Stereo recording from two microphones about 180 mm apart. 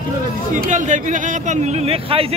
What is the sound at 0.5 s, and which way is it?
Speech, 45° right (ahead or behind).